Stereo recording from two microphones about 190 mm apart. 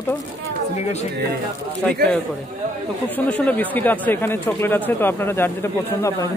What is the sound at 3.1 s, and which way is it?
Speech, 10° left (ahead or behind).